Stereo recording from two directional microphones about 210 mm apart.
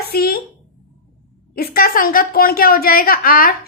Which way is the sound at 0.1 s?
45° left (ahead or behind).